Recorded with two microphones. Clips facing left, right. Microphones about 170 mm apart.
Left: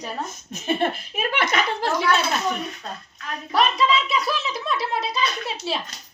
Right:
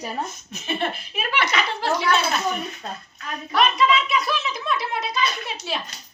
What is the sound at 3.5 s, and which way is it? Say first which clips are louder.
Speech: right 1 dB; 35° left (ahead or behind).